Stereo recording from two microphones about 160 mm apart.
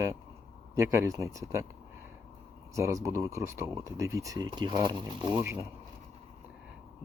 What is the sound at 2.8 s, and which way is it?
Speech, 20° right (ahead or behind).